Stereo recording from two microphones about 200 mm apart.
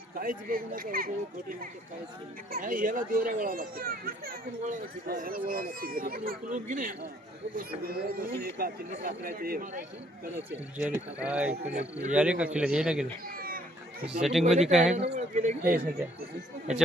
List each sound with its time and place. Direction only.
0.1 s a child's voice: 45° right (ahead or behind)
10.8 s speech: 5° right (ahead or behind)
11.7 s speech: 35° right (ahead or behind)
12.1 s a man's voice: 5° right (ahead or behind)
13.2 s a sound: 45° right (ahead or behind)
14.0 s a man's voice: 5° right (ahead or behind)
14.9 s speech: 35° right (ahead or behind)